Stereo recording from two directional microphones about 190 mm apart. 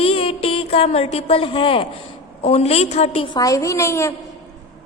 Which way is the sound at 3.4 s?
15° left (ahead or behind).